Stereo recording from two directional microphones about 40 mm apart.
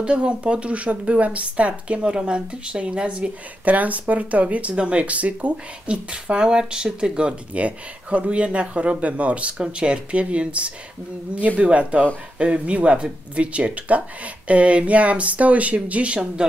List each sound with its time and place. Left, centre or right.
0.0 s speech: right
3.6 s speech: right
6.0 s speech: right